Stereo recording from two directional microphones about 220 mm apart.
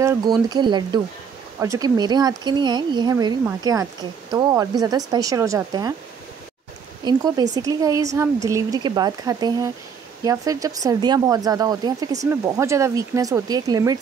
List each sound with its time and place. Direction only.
0.0 s speech: 15° right (ahead or behind)
7.1 s speech: 15° right (ahead or behind)